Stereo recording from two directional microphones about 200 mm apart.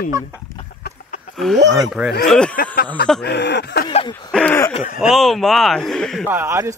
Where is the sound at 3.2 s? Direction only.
55° left (ahead or behind).